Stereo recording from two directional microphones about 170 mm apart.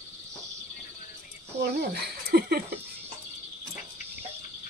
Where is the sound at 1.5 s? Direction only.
70° right (ahead or behind).